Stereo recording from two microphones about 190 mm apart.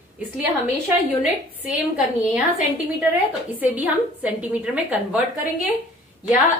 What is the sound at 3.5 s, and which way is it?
A woman's voice, 10° right (ahead or behind).